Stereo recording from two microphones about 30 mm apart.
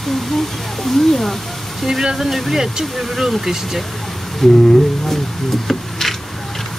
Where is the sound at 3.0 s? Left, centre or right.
Centre.